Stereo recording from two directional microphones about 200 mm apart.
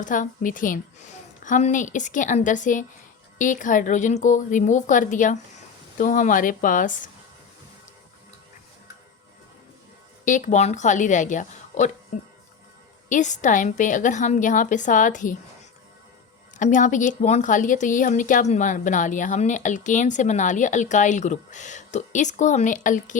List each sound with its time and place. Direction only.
0.0 s a woman's voice: 40° left (ahead or behind)
10.2 s a woman's voice: 40° left (ahead or behind)
13.1 s a woman's voice: 40° left (ahead or behind)
16.6 s a woman's voice: 40° left (ahead or behind)